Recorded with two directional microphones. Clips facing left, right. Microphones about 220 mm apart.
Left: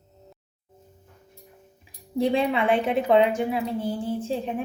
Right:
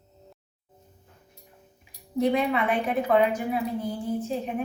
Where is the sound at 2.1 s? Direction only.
30° left (ahead or behind).